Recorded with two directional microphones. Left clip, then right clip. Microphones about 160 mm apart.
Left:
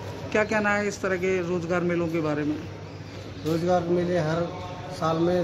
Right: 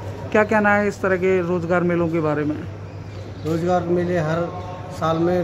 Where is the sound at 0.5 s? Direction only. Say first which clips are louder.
Right 7 dB; 40° right (ahead or behind).